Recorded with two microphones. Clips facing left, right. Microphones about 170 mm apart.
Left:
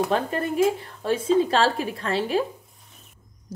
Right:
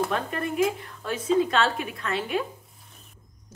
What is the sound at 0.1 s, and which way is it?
A woman's voice, 30° left (ahead or behind).